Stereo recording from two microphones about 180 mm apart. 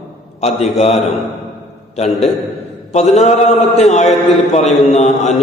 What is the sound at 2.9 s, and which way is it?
A man's voice, 40° left (ahead or behind).